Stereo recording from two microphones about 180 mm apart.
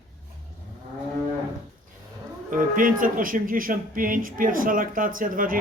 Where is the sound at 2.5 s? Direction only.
50° right (ahead or behind).